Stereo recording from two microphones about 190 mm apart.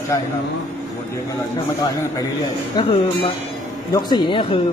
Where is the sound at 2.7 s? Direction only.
30° left (ahead or behind).